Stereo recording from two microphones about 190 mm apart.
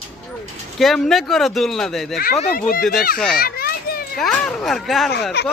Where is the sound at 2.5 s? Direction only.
45° left (ahead or behind).